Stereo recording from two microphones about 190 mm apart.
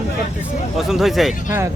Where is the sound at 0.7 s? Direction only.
Centre (ahead or behind).